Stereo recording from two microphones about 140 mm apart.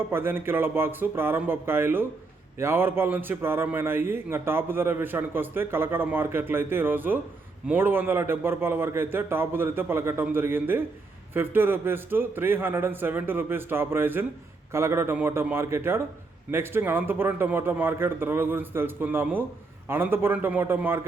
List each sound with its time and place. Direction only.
0.1 s a man's voice: 15° right (ahead or behind)